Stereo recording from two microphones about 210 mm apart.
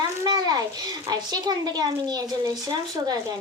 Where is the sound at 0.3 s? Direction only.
20° right (ahead or behind).